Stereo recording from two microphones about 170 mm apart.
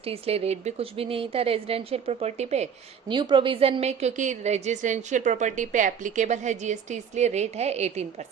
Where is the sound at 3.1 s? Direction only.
25° right (ahead or behind).